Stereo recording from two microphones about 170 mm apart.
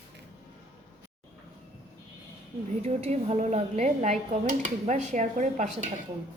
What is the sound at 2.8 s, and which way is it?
Speech, 40° right (ahead or behind).